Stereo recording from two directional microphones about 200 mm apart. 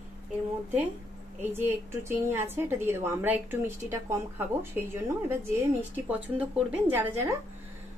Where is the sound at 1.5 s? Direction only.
10° right (ahead or behind).